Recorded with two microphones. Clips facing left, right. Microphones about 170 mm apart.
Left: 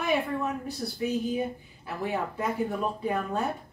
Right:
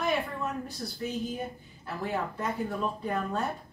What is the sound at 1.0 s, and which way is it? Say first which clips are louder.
Speech: left 5 dB; 5° left (ahead or behind).